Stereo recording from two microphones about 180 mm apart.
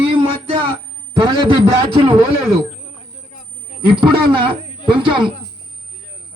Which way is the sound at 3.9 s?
25° right (ahead or behind).